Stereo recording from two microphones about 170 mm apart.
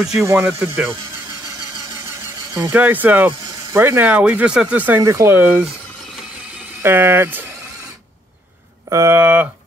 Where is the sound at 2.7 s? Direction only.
10° right (ahead or behind).